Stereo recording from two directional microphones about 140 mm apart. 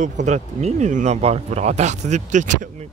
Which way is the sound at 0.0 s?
60° right (ahead or behind).